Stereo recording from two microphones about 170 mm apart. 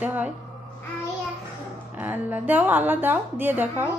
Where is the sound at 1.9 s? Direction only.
10° right (ahead or behind).